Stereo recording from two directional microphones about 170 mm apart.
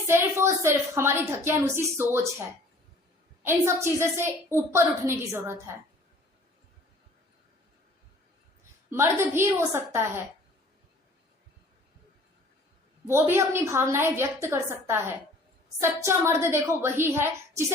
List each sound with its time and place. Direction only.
0.1 s a woman's voice: 15° right (ahead or behind)
3.4 s a woman's voice: 15° right (ahead or behind)
8.9 s a woman's voice: 15° right (ahead or behind)
13.1 s a woman's voice: 15° right (ahead or behind)